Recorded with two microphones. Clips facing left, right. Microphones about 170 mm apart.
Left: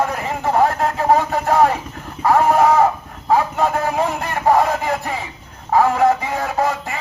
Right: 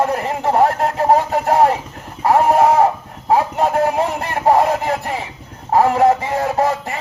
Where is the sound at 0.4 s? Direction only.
35° right (ahead or behind).